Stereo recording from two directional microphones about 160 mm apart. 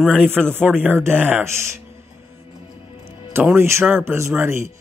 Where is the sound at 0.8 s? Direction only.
15° right (ahead or behind).